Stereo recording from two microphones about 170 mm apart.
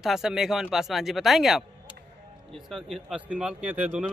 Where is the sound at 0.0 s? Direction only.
Centre (ahead or behind).